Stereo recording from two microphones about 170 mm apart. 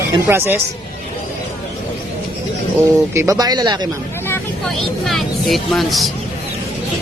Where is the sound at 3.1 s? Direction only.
20° right (ahead or behind).